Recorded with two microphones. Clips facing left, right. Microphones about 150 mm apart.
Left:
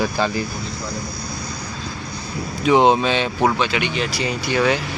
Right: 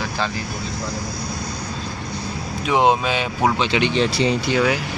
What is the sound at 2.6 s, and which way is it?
Speech, 5° right (ahead or behind).